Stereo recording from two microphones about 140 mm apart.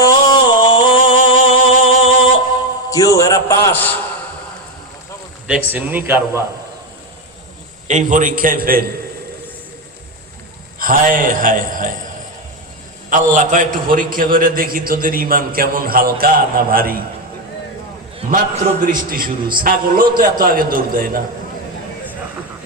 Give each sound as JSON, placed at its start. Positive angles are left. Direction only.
{"t": 0.0, "sound": "music", "side_deg": 30}
{"t": 2.9, "sound": "a man's voice", "side_deg": 25}
{"t": 5.5, "sound": "a man's voice", "side_deg": -15}
{"t": 7.9, "sound": "a man's voice", "side_deg": -65}
{"t": 10.8, "sound": "a man's voice", "side_deg": -85}
{"t": 18.9, "sound": "a man's voice", "side_deg": -90}